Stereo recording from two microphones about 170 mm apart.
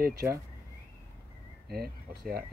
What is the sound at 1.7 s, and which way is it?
Speech, 65° right (ahead or behind).